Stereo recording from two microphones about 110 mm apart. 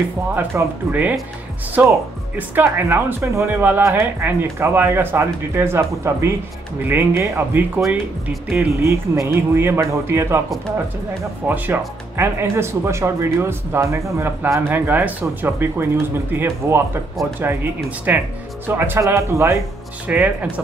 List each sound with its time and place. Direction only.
0.4 s speech: 15° right (ahead or behind)
11.4 s speech: 15° right (ahead or behind)
17.8 s speech: 15° right (ahead or behind)
20.1 s speech: 10° right (ahead or behind)